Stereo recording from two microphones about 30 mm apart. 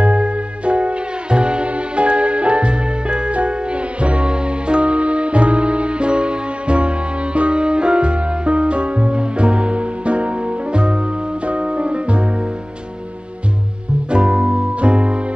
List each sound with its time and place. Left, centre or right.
0.0 s music: right
3.3 s music: right
14.1 s music: right